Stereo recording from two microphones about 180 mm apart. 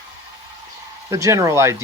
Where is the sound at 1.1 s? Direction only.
15° right (ahead or behind).